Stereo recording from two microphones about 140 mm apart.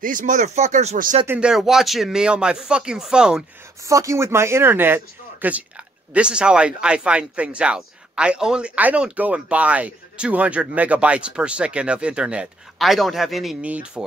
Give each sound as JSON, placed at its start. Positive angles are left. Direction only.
{"t": 0.0, "sound": "speech", "side_deg": -70}
{"t": 1.2, "sound": "speech", "side_deg": -15}
{"t": 1.5, "sound": "speech", "side_deg": 0}
{"t": 3.8, "sound": "speech", "side_deg": -20}